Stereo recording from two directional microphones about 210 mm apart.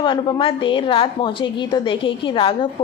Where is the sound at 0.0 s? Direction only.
25° left (ahead or behind).